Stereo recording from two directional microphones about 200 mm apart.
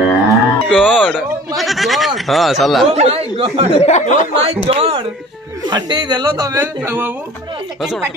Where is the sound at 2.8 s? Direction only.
30° right (ahead or behind).